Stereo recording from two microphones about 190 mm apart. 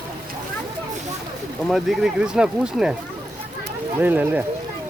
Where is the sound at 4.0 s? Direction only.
10° right (ahead or behind).